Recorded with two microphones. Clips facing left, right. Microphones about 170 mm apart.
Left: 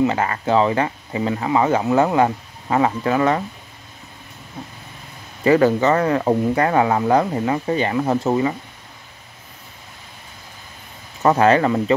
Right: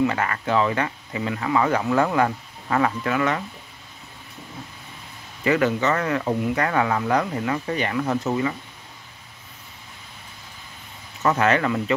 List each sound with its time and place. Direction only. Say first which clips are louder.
0.0 s speech: left 3 dB; 25° left (ahead or behind)
5.4 s speech: left 6 dB; 35° left (ahead or behind)
11.2 s speech: left 5 dB; 30° left (ahead or behind)